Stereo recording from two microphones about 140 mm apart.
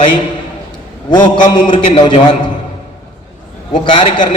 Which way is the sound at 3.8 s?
40° left (ahead or behind).